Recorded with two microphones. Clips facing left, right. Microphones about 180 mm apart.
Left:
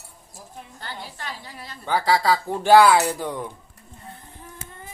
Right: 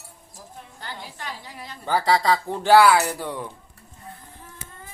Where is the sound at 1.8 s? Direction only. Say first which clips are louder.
Even; centre (ahead or behind).